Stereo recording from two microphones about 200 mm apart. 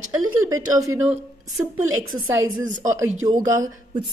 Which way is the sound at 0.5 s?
15° right (ahead or behind).